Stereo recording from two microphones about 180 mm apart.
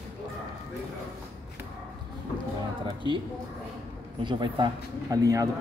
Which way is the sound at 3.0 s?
25° right (ahead or behind).